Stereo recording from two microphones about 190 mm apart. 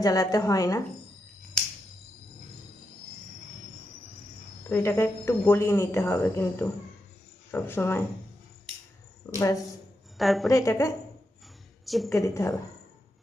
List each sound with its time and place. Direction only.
0.0 s a woman's voice: 20° left (ahead or behind)
4.7 s a woman's voice: 15° left (ahead or behind)
9.2 s speech: 15° left (ahead or behind)
10.2 s a woman's voice: centre (ahead or behind)
10.5 s a woman's voice: 15° left (ahead or behind)
11.9 s a woman's voice: centre (ahead or behind)
12.1 s a woman's voice: 15° left (ahead or behind)